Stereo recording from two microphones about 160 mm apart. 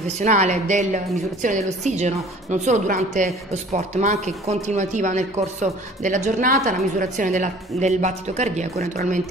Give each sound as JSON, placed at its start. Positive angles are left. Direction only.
{"t": 0.2, "sound": "a woman's voice", "side_deg": -45}